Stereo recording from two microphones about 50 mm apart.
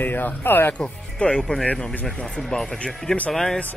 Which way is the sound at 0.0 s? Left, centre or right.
Left.